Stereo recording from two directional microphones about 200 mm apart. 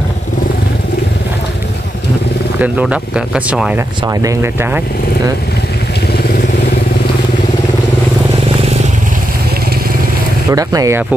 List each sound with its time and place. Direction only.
2.6 s speech: 5° right (ahead or behind)
4.0 s speech: 15° right (ahead or behind)
10.5 s speech: 15° right (ahead or behind)